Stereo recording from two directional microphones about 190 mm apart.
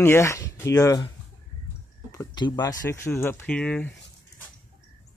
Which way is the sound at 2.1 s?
20° left (ahead or behind).